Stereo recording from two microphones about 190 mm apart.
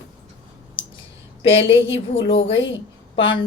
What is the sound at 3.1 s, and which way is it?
Speech, 25° left (ahead or behind).